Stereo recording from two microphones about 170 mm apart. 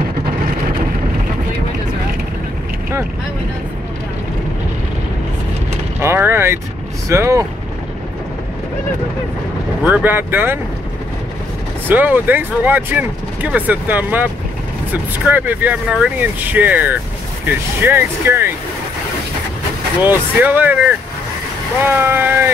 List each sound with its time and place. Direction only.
5.9 s vehicle: 15° right (ahead or behind)
7.1 s speech: 15° right (ahead or behind)
9.8 s speech: 10° right (ahead or behind)
11.9 s speech: 10° right (ahead or behind)
20.0 s speech: 10° right (ahead or behind)
21.8 s speech: 10° right (ahead or behind)